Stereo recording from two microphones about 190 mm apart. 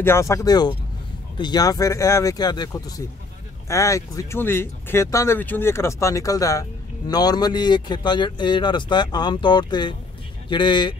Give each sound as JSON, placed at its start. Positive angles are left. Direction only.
{"t": 0.0, "sound": "speech", "side_deg": 15}